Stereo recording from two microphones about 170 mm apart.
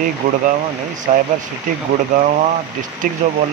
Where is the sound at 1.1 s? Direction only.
45° right (ahead or behind).